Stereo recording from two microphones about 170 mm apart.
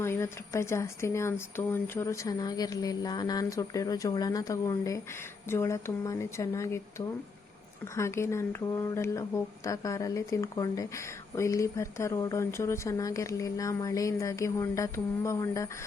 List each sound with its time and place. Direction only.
0.0 s speech: 15° left (ahead or behind)
7.9 s speech: 15° left (ahead or behind)